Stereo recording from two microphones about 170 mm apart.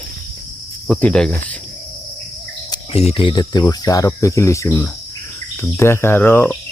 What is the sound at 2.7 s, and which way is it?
Speech, 35° left (ahead or behind).